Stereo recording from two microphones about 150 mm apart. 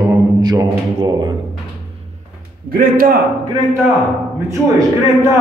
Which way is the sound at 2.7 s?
75° right (ahead or behind).